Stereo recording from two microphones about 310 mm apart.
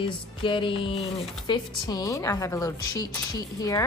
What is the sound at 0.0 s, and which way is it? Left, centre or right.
A woman's voice, centre.